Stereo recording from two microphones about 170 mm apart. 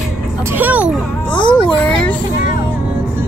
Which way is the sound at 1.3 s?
5° left (ahead or behind).